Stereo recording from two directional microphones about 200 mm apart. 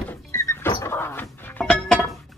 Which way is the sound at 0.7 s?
15° left (ahead or behind).